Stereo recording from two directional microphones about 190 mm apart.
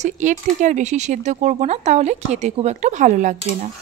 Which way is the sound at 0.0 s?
40° right (ahead or behind).